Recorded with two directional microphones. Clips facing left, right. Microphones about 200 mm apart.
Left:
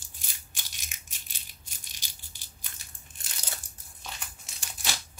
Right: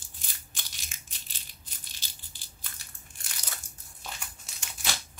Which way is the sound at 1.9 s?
15° left (ahead or behind).